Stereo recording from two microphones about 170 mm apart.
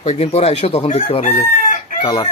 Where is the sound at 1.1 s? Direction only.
35° left (ahead or behind).